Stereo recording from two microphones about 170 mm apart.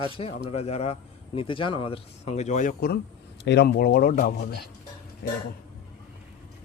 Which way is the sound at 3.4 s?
80° left.